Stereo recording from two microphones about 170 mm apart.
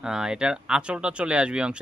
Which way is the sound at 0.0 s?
5° right (ahead or behind).